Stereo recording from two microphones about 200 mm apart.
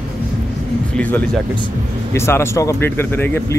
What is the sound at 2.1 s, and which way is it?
Speech, 15° left (ahead or behind).